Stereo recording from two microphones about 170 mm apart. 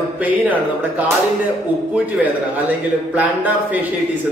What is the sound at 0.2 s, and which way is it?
Speech, 10° right (ahead or behind).